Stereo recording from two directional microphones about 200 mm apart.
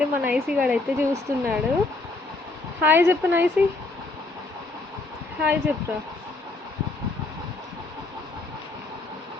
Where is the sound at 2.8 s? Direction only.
10° right (ahead or behind).